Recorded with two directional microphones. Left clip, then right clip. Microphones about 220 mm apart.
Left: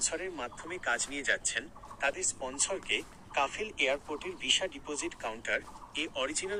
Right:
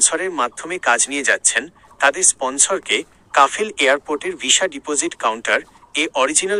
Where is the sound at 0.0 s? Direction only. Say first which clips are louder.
Right 17 dB; 45° right (ahead or behind).